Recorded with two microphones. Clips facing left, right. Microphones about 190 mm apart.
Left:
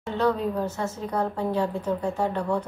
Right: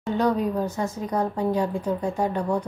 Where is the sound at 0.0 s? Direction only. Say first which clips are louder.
Right 2 dB; 15° right (ahead or behind).